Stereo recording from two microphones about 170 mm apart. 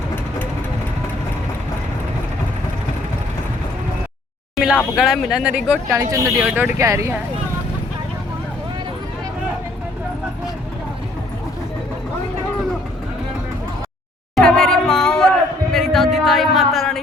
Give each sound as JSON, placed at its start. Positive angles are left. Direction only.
{"t": 4.5, "sound": "a sound", "side_deg": -5}
{"t": 4.9, "sound": "speech", "side_deg": 0}
{"t": 5.9, "sound": "speech", "side_deg": -20}
{"t": 14.3, "sound": "music", "side_deg": 5}